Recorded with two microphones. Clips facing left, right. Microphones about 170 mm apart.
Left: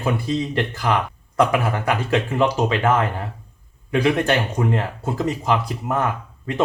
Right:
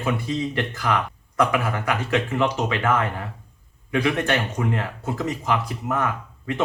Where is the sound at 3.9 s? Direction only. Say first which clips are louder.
Left 3 dB; 35° left (ahead or behind).